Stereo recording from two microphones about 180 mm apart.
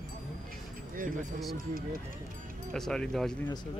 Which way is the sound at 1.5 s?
55° right (ahead or behind).